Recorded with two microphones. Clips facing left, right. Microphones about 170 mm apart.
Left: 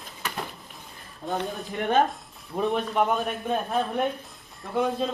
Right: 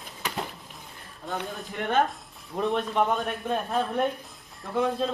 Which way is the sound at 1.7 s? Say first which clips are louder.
Left 2 dB; 20° left (ahead or behind).